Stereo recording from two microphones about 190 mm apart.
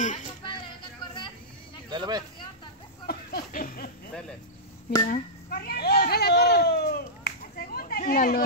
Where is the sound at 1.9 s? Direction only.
20° right (ahead or behind).